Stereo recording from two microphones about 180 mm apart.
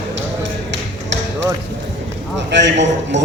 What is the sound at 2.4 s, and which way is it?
Speech, 80° right.